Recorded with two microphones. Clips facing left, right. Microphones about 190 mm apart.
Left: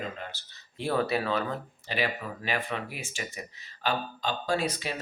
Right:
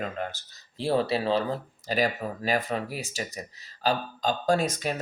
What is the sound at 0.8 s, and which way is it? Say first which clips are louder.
Speech: right 2 dB; 30° right (ahead or behind).